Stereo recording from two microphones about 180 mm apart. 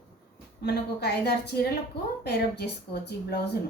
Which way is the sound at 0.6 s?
65° left (ahead or behind).